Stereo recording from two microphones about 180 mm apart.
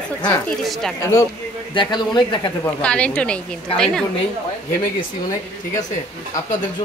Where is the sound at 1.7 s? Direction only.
25° left (ahead or behind).